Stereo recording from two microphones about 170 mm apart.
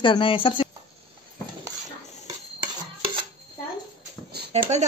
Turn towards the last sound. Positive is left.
turn(degrees=-40)  # may be behind; listen again after turning